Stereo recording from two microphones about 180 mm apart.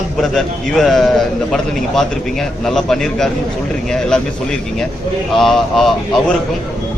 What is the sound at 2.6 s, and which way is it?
Speech, centre (ahead or behind).